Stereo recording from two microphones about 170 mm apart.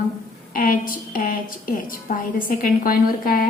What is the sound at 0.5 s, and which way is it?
A woman's voice, 55° left (ahead or behind).